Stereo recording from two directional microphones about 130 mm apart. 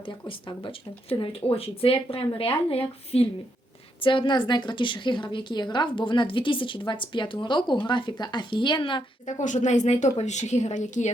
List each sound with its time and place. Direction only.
0.0 s a woman's voice: 40° left (ahead or behind)
9.2 s a woman's voice: 70° left (ahead or behind)